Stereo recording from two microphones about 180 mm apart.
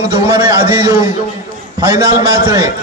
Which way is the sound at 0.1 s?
15° right (ahead or behind).